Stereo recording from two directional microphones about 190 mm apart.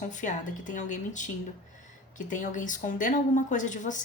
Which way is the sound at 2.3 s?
40° left (ahead or behind).